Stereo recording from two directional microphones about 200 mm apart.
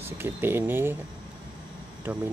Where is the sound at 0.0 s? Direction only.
10° right (ahead or behind).